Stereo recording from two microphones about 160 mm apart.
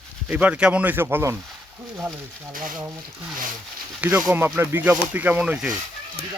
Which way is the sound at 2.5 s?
60° right (ahead or behind).